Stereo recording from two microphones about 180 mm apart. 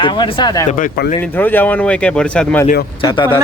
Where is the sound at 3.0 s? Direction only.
25° left (ahead or behind).